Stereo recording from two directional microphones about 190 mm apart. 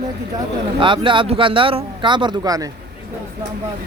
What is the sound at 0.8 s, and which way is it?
Speech, 25° right (ahead or behind).